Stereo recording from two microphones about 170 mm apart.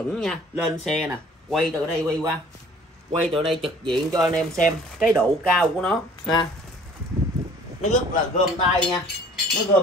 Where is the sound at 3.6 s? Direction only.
30° right (ahead or behind).